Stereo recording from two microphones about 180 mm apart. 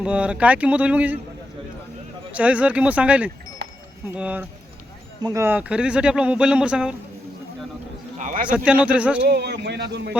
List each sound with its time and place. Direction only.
0.0 s speech: 5° right (ahead or behind)
2.3 s speech: 5° right (ahead or behind)
3.6 s a sound: 65° right (ahead or behind)
4.1 s speech: 10° right (ahead or behind)
8.2 s a sound: 45° right (ahead or behind)
8.4 s speech: 5° right (ahead or behind)
9.2 s speech: 65° right (ahead or behind)